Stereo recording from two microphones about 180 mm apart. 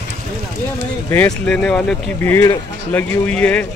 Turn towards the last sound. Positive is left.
turn(degrees=5)  # may be behind; listen again after turning